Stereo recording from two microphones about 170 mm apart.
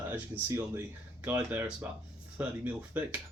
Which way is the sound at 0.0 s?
15° right (ahead or behind).